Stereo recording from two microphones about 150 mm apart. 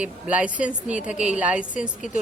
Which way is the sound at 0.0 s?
10° right (ahead or behind).